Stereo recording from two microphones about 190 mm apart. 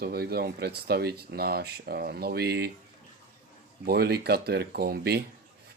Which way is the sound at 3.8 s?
55° right (ahead or behind).